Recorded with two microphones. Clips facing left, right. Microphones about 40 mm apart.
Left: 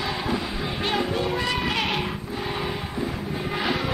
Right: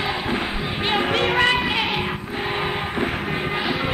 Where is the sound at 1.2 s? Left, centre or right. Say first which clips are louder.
Right 7 dB; right.